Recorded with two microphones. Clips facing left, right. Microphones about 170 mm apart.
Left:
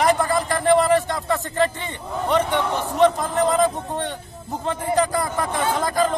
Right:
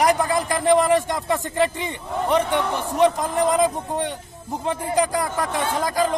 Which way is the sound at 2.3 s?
15° right (ahead or behind).